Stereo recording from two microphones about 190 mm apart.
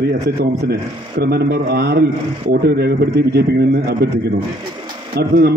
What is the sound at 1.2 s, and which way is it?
A man's voice, 60° right (ahead or behind).